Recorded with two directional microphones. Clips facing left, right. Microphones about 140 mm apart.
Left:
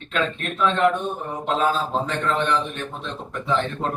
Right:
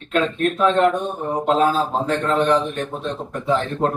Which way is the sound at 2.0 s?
40° right (ahead or behind).